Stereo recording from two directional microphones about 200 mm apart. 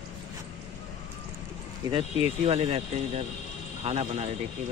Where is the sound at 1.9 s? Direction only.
30° right (ahead or behind).